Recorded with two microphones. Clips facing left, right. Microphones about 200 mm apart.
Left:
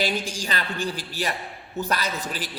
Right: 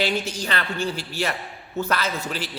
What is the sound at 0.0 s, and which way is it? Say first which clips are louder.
A man's voice: right 2 dB; 10° left (ahead or behind).